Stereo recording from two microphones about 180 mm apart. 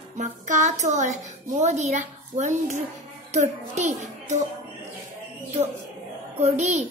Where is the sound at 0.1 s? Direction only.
40° right (ahead or behind).